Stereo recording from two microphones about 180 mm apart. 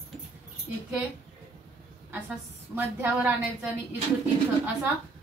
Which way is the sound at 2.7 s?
10° right (ahead or behind).